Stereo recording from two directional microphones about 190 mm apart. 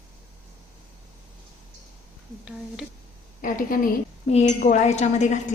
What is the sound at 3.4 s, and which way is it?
Speech, 45° left (ahead or behind).